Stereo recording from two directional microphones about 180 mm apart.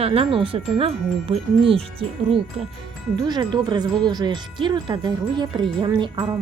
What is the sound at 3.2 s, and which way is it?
Speech, 25° right (ahead or behind).